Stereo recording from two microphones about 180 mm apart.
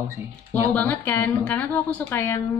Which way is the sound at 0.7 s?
10° left (ahead or behind).